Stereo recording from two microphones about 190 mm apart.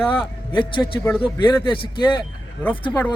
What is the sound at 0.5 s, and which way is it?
Speech, 25° left (ahead or behind).